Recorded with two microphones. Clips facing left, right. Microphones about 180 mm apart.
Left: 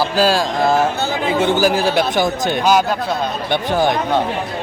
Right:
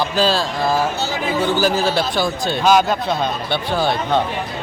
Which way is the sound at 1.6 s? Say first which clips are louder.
Left 2 dB; 10° left (ahead or behind).